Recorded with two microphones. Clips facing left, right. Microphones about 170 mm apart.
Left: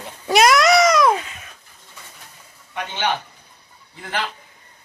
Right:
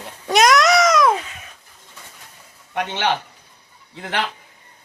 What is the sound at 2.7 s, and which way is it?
Speech, 70° right (ahead or behind).